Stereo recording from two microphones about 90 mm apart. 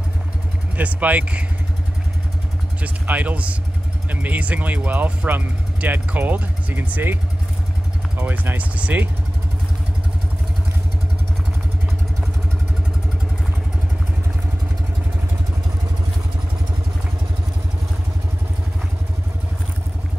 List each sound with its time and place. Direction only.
0.7 s speech: 15° right (ahead or behind)
2.8 s speech: 15° right (ahead or behind)
8.2 s speech: 20° right (ahead or behind)